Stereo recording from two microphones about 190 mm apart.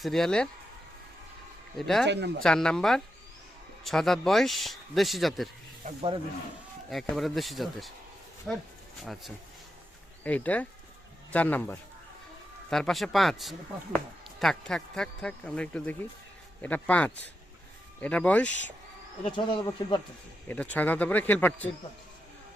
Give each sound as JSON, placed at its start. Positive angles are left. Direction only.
{"t": 0.0, "sound": "speech", "side_deg": 0}
{"t": 2.0, "sound": "speech", "side_deg": -65}
{"t": 2.4, "sound": "speech", "side_deg": 5}
{"t": 5.8, "sound": "speech", "side_deg": -30}
{"t": 6.9, "sound": "speech", "side_deg": 0}
{"t": 10.2, "sound": "speech", "side_deg": 10}
{"t": 19.2, "sound": "speech", "side_deg": 25}
{"t": 20.5, "sound": "speech", "side_deg": 10}